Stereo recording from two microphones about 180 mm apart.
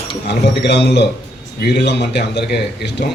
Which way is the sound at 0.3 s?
70° left (ahead or behind).